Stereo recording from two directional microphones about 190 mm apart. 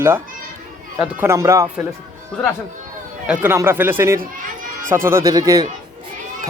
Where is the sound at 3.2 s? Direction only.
10° right (ahead or behind).